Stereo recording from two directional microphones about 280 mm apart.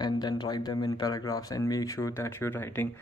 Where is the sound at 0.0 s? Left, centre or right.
Centre.